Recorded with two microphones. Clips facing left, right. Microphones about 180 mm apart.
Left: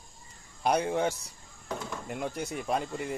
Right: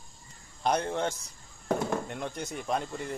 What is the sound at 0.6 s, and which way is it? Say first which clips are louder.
Speech: left 2 dB; 5° left (ahead or behind).